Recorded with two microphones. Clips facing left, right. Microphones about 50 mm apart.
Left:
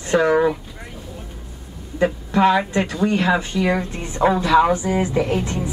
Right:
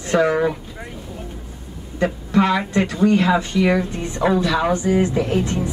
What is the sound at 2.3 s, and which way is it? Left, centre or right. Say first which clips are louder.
A woman's voice: left 1 dB; left.